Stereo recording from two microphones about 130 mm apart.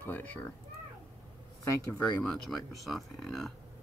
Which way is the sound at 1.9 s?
5° left (ahead or behind).